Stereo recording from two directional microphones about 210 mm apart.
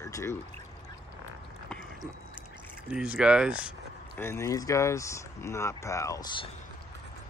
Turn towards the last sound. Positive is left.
turn(degrees=20)  # may be behind; listen again after turning